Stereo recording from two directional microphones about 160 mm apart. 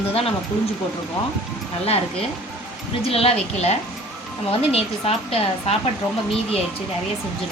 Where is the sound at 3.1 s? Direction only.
35° left (ahead or behind).